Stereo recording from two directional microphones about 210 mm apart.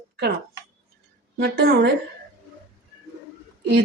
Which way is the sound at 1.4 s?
50° right (ahead or behind).